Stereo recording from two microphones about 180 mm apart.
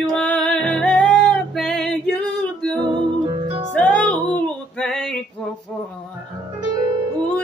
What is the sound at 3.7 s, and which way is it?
Music, 5° left (ahead or behind).